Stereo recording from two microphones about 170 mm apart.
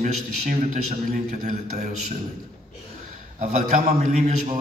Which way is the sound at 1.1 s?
50° right (ahead or behind).